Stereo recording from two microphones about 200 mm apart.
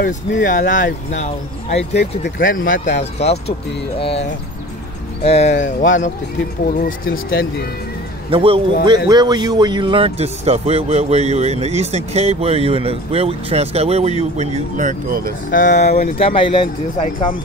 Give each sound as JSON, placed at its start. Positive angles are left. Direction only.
{"t": 0.4, "sound": "speech", "side_deg": 40}
{"t": 2.0, "sound": "speech", "side_deg": 50}
{"t": 3.0, "sound": "speech", "side_deg": 30}
{"t": 8.3, "sound": "a man's voice", "side_deg": -30}
{"t": 15.5, "sound": "speech", "side_deg": 40}